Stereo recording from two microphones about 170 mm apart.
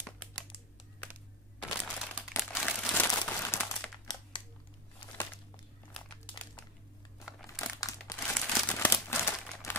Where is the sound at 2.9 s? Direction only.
15° left (ahead or behind).